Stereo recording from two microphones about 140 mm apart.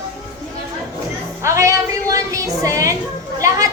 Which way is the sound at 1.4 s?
20° right (ahead or behind).